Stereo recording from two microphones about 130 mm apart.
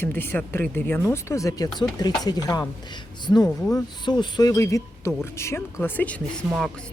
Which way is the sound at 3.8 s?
35° left (ahead or behind).